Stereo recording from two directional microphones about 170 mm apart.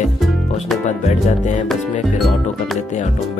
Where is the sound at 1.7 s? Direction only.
Centre (ahead or behind).